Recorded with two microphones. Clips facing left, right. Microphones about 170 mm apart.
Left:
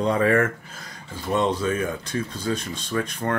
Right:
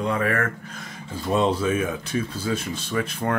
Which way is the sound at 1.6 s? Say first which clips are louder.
Right 1 dB; 10° right (ahead or behind).